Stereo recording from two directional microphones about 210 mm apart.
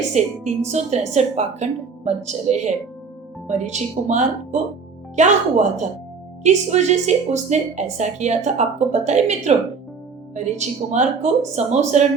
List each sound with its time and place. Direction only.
0.1 s a woman's voice: 30° right (ahead or behind)